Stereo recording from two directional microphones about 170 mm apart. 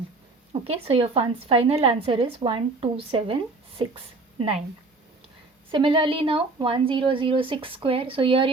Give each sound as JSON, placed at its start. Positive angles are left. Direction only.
{"t": 0.5, "sound": "a woman's voice", "side_deg": -35}
{"t": 5.7, "sound": "a woman's voice", "side_deg": -30}